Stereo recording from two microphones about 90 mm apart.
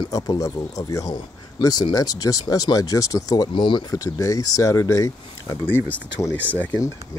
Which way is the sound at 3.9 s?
40° left (ahead or behind).